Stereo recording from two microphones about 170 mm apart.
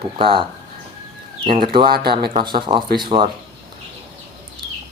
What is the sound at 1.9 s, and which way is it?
Speech, 70° right (ahead or behind).